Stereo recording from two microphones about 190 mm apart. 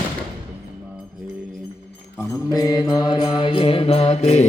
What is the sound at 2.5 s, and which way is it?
Mantra, 20° left (ahead or behind).